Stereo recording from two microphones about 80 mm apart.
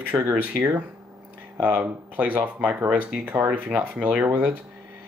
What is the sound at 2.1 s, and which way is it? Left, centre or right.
Speech, centre.